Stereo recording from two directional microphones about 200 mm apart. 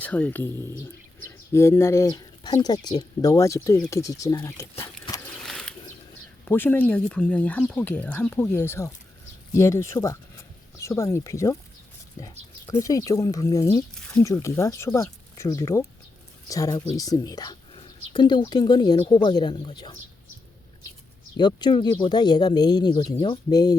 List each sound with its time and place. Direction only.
0.0 s speech: 10° left (ahead or behind)
4.8 s a sound: 15° left (ahead or behind)
5.4 s mechanisms: centre (ahead or behind)
6.4 s speech: 10° left (ahead or behind)
12.8 s speech: 15° left (ahead or behind)
21.3 s speech: 20° left (ahead or behind)